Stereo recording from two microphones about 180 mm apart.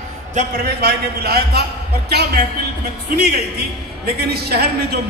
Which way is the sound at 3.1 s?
60° right (ahead or behind).